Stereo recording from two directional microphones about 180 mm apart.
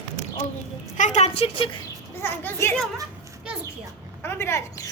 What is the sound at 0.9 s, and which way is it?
Speech, 40° left (ahead or behind).